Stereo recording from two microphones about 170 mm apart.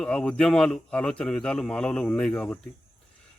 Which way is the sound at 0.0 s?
5° left (ahead or behind).